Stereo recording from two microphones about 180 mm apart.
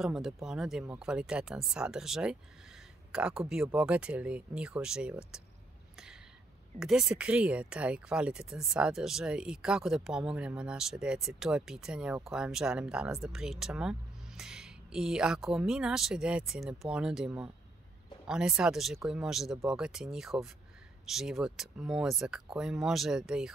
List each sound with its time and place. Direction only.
0.0 s speech: 5° right (ahead or behind)
6.8 s speech: 5° right (ahead or behind)